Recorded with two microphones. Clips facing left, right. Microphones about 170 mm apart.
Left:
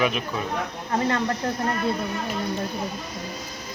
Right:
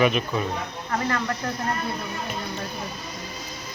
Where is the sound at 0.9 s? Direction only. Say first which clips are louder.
Left 2 dB; 25° left (ahead or behind).